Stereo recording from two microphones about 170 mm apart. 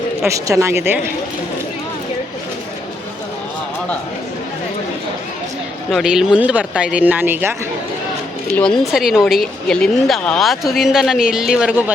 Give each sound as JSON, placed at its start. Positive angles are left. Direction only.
{"t": 0.3, "sound": "speech", "side_deg": -20}
{"t": 5.9, "sound": "speech", "side_deg": -5}
{"t": 8.5, "sound": "a woman's voice", "side_deg": 0}